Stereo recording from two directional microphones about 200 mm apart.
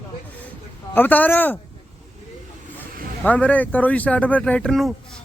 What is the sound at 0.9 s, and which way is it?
Speech, 10° left (ahead or behind).